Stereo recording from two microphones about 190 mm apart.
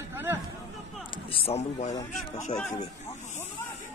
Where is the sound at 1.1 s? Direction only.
30° left (ahead or behind).